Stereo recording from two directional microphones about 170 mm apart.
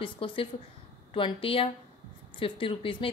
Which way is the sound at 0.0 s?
30° left (ahead or behind).